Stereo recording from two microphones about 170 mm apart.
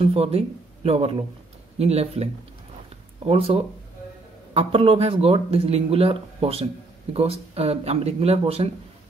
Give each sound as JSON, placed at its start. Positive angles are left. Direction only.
{"t": 0.0, "sound": "speech", "side_deg": -35}
{"t": 3.3, "sound": "speech", "side_deg": -35}